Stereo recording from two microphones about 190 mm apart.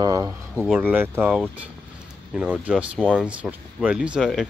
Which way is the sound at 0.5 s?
5° right (ahead or behind).